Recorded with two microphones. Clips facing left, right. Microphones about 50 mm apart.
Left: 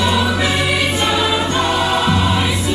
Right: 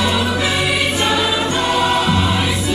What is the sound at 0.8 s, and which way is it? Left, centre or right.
Music, centre.